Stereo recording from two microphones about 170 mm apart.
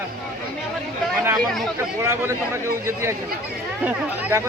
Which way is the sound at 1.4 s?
Centre (ahead or behind).